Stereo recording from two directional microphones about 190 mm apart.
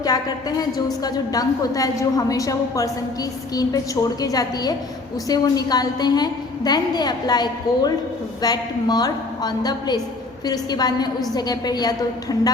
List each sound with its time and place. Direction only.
0.0 s a woman's voice: 20° left (ahead or behind)